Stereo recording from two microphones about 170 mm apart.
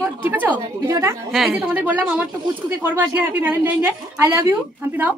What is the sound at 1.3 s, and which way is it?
A woman's voice, centre (ahead or behind).